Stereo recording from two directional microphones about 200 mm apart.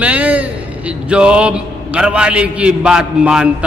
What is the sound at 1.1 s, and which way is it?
A man's voice, 5° right (ahead or behind).